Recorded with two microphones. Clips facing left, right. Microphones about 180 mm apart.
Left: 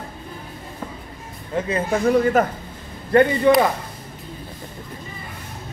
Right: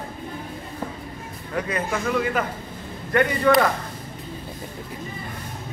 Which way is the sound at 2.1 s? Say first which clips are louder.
Left 9 dB; 40° left (ahead or behind).